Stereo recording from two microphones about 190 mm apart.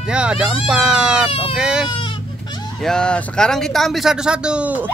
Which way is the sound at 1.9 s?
25° left (ahead or behind).